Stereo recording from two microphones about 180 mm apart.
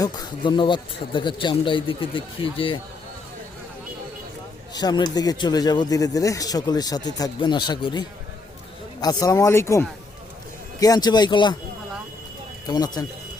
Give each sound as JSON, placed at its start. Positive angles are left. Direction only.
{"t": 0.0, "sound": "speech", "side_deg": 20}
{"t": 4.7, "sound": "a man's voice", "side_deg": 20}
{"t": 12.6, "sound": "speech", "side_deg": 20}